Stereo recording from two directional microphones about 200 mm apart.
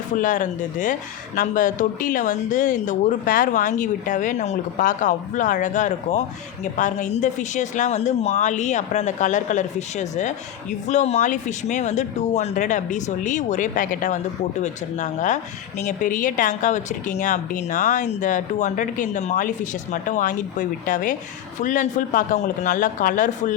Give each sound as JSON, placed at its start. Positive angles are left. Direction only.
{"t": 0.2, "sound": "speech", "side_deg": 40}